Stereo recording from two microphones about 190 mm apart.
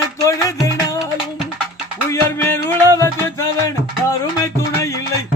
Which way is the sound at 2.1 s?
15° left (ahead or behind).